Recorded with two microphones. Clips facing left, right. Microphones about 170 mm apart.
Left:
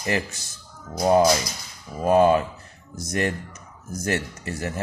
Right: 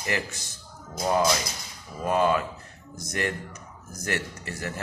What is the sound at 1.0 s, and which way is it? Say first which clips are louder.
A man's voice: left 6 dB; 25° left (ahead or behind).